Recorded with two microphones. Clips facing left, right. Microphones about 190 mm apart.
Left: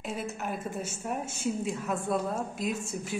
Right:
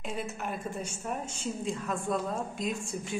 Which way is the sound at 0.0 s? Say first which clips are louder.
Left 1 dB; 5° left (ahead or behind).